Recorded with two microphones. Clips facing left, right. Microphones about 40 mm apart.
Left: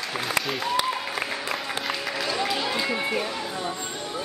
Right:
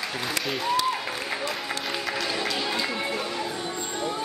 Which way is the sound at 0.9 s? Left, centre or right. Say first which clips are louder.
Right 1 dB; centre.